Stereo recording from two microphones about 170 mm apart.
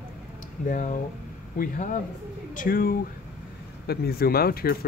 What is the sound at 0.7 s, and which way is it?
Speech, 50° left (ahead or behind).